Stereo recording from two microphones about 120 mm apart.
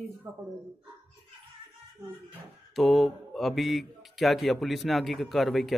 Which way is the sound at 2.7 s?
Centre (ahead or behind).